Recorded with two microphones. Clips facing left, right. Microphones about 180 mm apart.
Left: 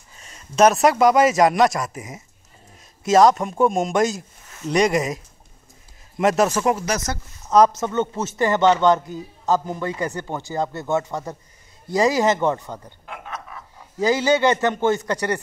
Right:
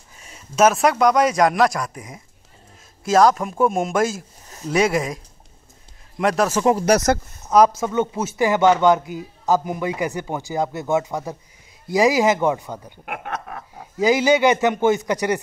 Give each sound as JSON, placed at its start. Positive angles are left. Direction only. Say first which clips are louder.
{"t": 0.2, "sound": "speech", "louder": "left 1 dB", "side_deg": -5}
{"t": 6.9, "sound": "speech", "louder": "right 9 dB", "side_deg": -80}
{"t": 7.4, "sound": "speech", "louder": "right 1 dB", "side_deg": -10}
{"t": 13.0, "sound": "a sound", "louder": "right 5 dB", "side_deg": -65}
{"t": 13.9, "sound": "speech", "louder": "right 2 dB", "side_deg": -15}